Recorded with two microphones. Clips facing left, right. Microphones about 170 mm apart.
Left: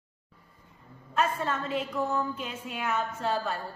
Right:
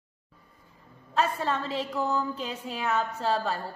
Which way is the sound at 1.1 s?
30° right (ahead or behind).